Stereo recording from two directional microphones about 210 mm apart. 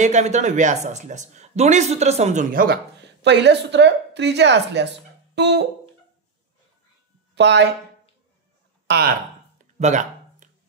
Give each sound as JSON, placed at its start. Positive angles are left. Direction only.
{"t": 0.0, "sound": "speech", "side_deg": -35}
{"t": 7.3, "sound": "speech", "side_deg": -55}
{"t": 8.8, "sound": "speech", "side_deg": -50}
{"t": 9.8, "sound": "a sound", "side_deg": -35}